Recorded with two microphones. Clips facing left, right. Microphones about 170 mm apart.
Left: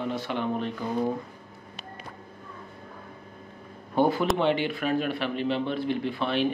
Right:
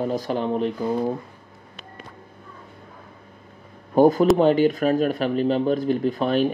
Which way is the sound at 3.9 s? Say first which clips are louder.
Right 8 dB; 40° right (ahead or behind).